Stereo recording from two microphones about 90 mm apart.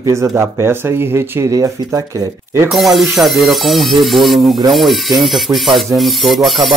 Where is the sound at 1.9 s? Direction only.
40° right (ahead or behind).